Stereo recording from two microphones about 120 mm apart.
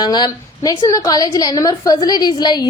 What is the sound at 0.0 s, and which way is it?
A woman's voice, 35° left (ahead or behind).